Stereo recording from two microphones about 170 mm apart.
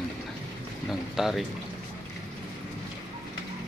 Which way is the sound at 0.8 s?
Centre (ahead or behind).